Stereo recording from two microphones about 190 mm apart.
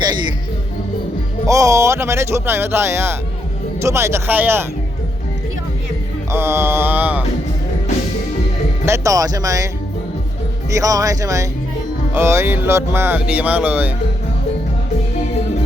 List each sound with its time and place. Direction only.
1.5 s speech: 15° right (ahead or behind)
6.3 s speech: 15° right (ahead or behind)
8.9 s speech: 15° right (ahead or behind)
10.7 s speech: 15° right (ahead or behind)